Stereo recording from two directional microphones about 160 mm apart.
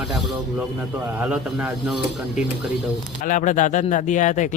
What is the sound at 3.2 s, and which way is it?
Speech, 50° left (ahead or behind).